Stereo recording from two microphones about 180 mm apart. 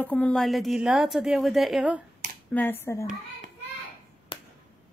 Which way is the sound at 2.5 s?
10° left (ahead or behind).